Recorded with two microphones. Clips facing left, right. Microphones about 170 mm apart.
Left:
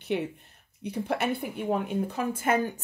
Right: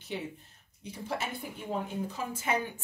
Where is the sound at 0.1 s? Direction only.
65° left (ahead or behind).